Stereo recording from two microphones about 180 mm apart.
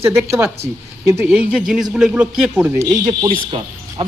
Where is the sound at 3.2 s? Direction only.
30° right (ahead or behind).